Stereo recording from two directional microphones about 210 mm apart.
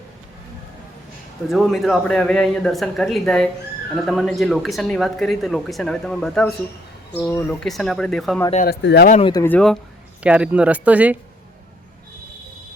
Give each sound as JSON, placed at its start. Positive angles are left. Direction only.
{"t": 1.5, "sound": "speech", "side_deg": 0}
{"t": 8.6, "sound": "speech", "side_deg": 50}
{"t": 9.2, "sound": "speech", "side_deg": 15}
{"t": 10.2, "sound": "speech", "side_deg": -5}